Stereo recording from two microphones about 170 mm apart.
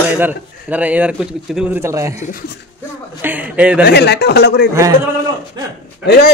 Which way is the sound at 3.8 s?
80° left.